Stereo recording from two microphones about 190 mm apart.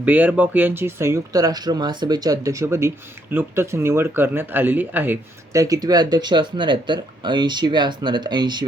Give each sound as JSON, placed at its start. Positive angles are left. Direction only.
{"t": 0.0, "sound": "speech", "side_deg": -10}